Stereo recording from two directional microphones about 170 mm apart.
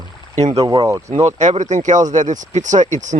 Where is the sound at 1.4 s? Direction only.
45° right (ahead or behind).